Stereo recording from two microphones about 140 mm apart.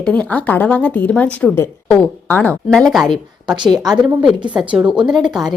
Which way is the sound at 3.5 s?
30° right (ahead or behind).